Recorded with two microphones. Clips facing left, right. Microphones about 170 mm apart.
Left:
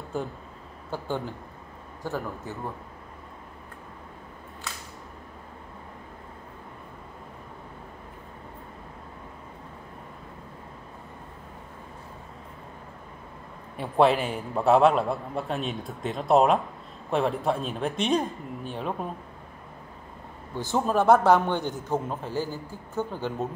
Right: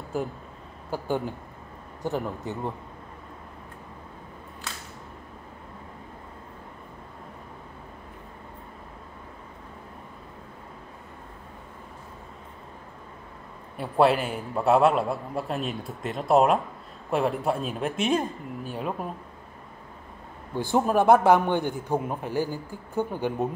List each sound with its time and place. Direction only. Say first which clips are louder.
0.1 s a man's voice: right 2 dB; centre (ahead or behind)
0.9 s a man's voice: right 3 dB; 15° right (ahead or behind)
13.7 s a man's voice: even; centre (ahead or behind)
20.7 s a man's voice: right 1 dB; 15° right (ahead or behind)